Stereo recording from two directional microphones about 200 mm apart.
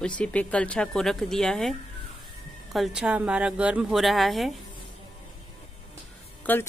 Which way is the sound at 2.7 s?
Centre (ahead or behind).